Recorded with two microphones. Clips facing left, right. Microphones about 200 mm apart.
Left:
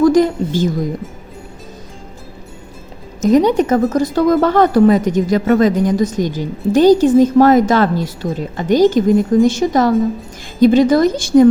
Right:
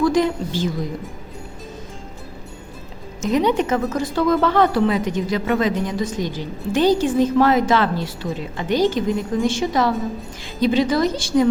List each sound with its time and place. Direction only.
0.0 s a woman's voice: 45° left (ahead or behind)
3.2 s speech: 40° left (ahead or behind)